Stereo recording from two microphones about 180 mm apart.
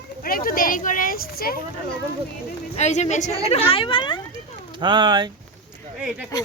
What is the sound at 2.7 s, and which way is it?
A woman's voice, 40° left (ahead or behind).